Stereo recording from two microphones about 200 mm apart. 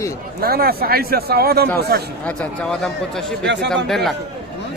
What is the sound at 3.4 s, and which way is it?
Speech, 60° right (ahead or behind).